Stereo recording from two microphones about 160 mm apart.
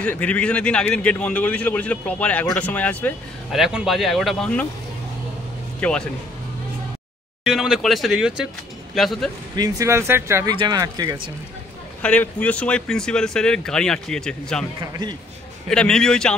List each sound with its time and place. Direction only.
0.0 s a man's voice: 10° left (ahead or behind)
3.5 s speech: 5° right (ahead or behind)
5.8 s speech: 5° left (ahead or behind)
7.4 s speech: 5° right (ahead or behind)
9.6 s speech: 20° right (ahead or behind)
10.5 s speech: 30° right (ahead or behind)
12.0 s speech: 10° left (ahead or behind)
14.8 s speech: 25° right (ahead or behind)
15.7 s speech: 5° left (ahead or behind)